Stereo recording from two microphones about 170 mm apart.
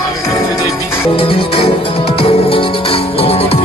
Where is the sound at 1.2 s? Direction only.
35° left (ahead or behind).